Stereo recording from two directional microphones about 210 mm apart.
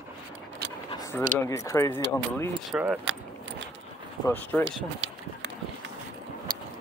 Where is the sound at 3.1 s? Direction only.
60° right (ahead or behind).